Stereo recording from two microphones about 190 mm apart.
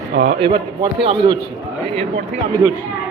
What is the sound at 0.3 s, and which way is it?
A man's voice, 25° right (ahead or behind).